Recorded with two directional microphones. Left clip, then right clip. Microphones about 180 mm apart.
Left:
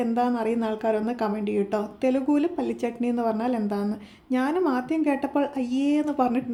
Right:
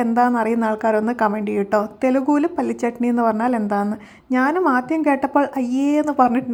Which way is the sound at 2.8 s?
25° right (ahead or behind).